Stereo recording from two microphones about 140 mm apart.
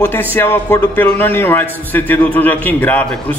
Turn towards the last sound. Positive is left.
turn(degrees=10)  # may be behind; listen again after turning